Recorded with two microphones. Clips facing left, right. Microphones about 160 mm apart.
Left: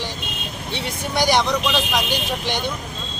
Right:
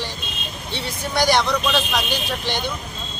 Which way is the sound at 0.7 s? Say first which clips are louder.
Even; 20° left (ahead or behind).